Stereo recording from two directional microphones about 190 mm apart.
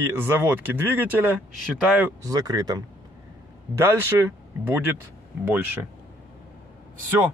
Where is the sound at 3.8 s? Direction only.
10° right (ahead or behind).